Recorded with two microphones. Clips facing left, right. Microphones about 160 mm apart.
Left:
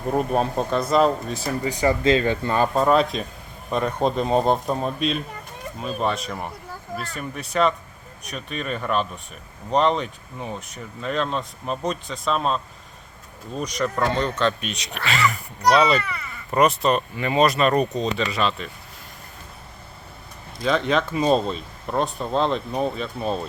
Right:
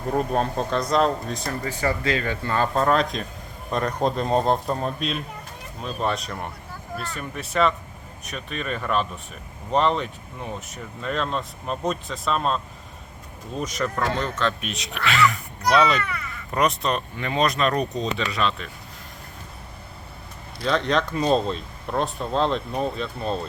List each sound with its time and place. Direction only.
0.1 s speech: 5° left (ahead or behind)
1.6 s speech: 20° left (ahead or behind)
2.7 s speech: 5° left (ahead or behind)
13.6 s speech: centre (ahead or behind)
20.6 s speech: 5° left (ahead or behind)